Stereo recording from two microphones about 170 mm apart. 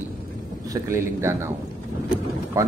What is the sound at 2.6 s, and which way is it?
Speech, 15° right (ahead or behind).